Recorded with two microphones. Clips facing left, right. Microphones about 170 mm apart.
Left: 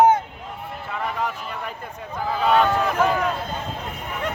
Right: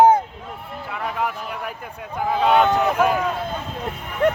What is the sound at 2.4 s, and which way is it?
Speech, 20° right (ahead or behind).